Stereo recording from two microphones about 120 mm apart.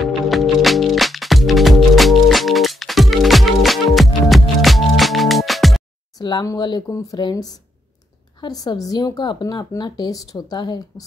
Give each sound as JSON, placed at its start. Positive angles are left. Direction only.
{"t": 0.0, "sound": "music", "side_deg": 0}
{"t": 6.1, "sound": "a sound", "side_deg": 40}
{"t": 6.4, "sound": "speech", "side_deg": 35}